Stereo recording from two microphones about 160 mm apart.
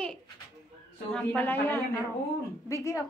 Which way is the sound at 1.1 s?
10° left (ahead or behind).